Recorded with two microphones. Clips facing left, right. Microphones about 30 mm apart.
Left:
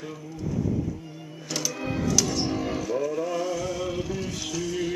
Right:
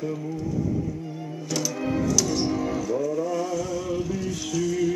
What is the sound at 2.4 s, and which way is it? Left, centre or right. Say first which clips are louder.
Music: right 2 dB; left.